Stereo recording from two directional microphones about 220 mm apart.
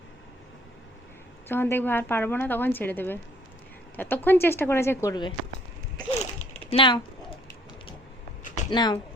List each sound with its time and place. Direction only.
1.5 s a woman's voice: 10° left (ahead or behind)
6.1 s a sound: 30° left (ahead or behind)
8.7 s speech: 20° left (ahead or behind)